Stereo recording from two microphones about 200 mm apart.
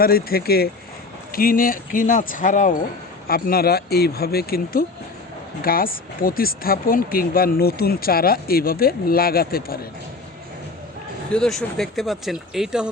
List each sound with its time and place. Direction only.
0.0 s speech: 50° left (ahead or behind)
11.3 s speech: 5° left (ahead or behind)